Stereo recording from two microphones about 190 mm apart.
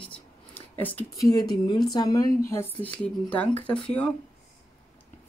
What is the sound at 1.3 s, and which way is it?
Speech, 20° left (ahead or behind).